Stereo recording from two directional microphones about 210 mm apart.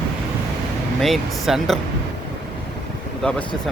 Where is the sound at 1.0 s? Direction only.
Centre (ahead or behind).